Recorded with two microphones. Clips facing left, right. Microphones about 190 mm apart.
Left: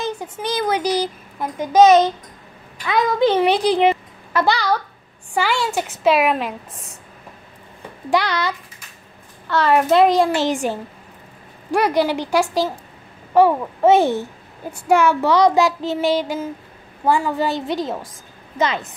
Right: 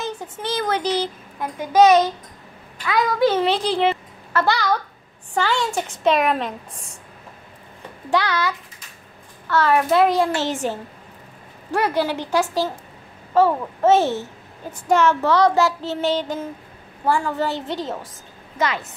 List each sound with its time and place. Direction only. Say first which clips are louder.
0.0 s a child's voice: left 3 dB; 15° left (ahead or behind)
2.8 s a child's voice: left 1 dB; 20° left (ahead or behind); by 6.9 s 5° left (ahead or behind)
8.1 s child singing: left 1 dB; 15° left (ahead or behind)
18.6 s speech: left 3 dB; 20° left (ahead or behind)